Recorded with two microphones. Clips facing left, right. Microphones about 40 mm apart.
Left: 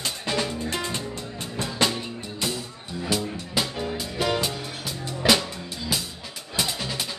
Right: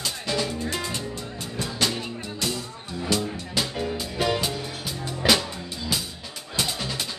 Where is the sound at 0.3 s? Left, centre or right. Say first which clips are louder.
Even; left.